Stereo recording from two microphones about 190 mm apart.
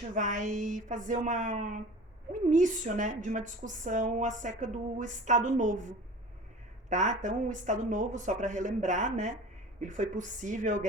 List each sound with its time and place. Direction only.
0.1 s a woman's voice: 40° right (ahead or behind)
6.9 s a woman's voice: 40° right (ahead or behind)